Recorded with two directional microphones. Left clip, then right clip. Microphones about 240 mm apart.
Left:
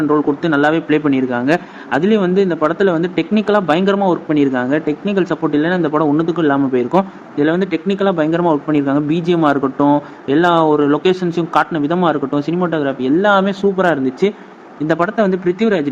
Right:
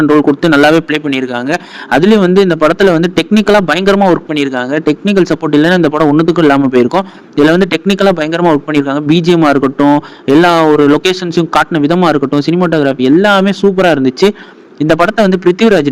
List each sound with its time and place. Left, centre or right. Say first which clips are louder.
0.1 s a man's voice: right 7 dB; right